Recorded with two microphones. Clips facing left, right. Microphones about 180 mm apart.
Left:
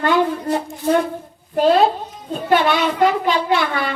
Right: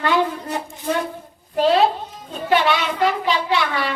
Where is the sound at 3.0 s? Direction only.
50° left (ahead or behind).